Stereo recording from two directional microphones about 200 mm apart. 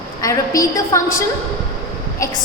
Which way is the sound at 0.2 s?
15° left (ahead or behind).